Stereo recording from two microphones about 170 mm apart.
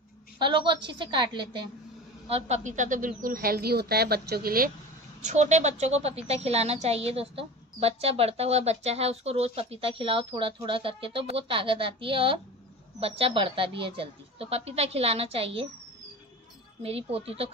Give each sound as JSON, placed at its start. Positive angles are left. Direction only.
{"t": 0.4, "sound": "a woman's voice", "side_deg": -30}
{"t": 2.2, "sound": "a woman's voice", "side_deg": -40}
{"t": 5.2, "sound": "a woman's voice", "side_deg": -45}
{"t": 16.8, "sound": "a woman's voice", "side_deg": -35}